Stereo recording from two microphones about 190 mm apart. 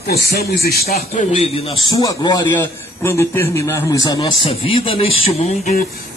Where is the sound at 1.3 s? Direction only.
30° left (ahead or behind).